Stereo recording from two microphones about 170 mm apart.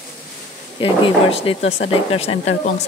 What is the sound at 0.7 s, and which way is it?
Speech, 30° left (ahead or behind).